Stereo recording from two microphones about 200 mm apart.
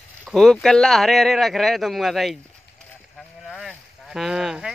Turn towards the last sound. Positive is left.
turn(degrees=-5)  # may be behind; listen again after turning